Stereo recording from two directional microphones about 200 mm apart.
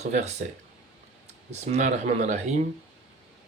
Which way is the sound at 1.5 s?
35° right (ahead or behind).